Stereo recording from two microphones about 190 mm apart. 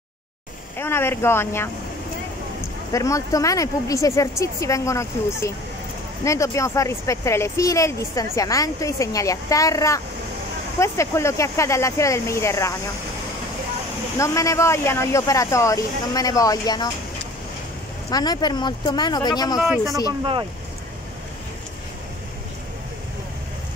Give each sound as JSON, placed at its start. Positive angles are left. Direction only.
{"t": 0.7, "sound": "speech", "side_deg": 10}
{"t": 2.9, "sound": "speech", "side_deg": 15}
{"t": 14.1, "sound": "speech", "side_deg": 15}
{"t": 18.1, "sound": "speech", "side_deg": 20}